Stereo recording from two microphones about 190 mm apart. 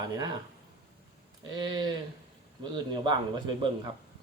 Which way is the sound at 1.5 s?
20° right (ahead or behind).